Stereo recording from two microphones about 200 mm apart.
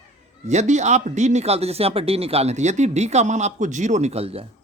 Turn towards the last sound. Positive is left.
turn(degrees=-30)  # may be behind; listen again after turning